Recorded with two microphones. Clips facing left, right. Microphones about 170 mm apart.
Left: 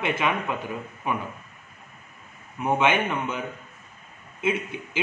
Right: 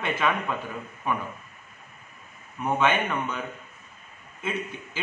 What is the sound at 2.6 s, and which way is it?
Speech, 15° left (ahead or behind).